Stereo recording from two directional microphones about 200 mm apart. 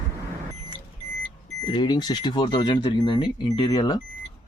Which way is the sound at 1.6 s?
20° left (ahead or behind).